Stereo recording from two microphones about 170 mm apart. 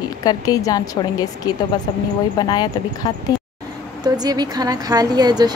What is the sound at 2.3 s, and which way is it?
Speech, 25° left (ahead or behind).